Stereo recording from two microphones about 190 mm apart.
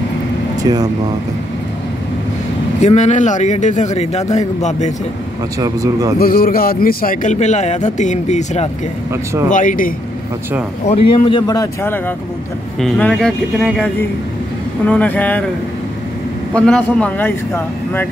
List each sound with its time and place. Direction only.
0.7 s speech: 25° right (ahead or behind)
2.8 s a man's voice: 35° left (ahead or behind)
5.6 s speech: 20° right (ahead or behind)
6.1 s a man's voice: 50° left (ahead or behind)
9.1 s speech: 15° right (ahead or behind)
9.5 s speech: 45° left (ahead or behind)
10.9 s a man's voice: 25° left (ahead or behind)
12.7 s speech: 5° left (ahead or behind)
14.9 s a man's voice: 10° left (ahead or behind)
16.5 s a man's voice: 5° left (ahead or behind)